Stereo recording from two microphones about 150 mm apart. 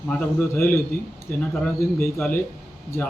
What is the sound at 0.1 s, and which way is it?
A man's voice, 10° left (ahead or behind).